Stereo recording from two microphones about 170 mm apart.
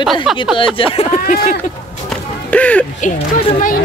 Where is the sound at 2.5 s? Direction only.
10° left (ahead or behind).